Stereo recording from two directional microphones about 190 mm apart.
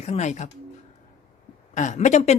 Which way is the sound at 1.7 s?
40° left (ahead or behind).